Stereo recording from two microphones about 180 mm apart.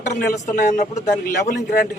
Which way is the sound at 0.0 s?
45° left (ahead or behind).